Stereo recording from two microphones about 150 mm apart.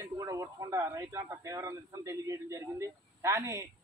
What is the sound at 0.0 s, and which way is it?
Speech, 20° right (ahead or behind).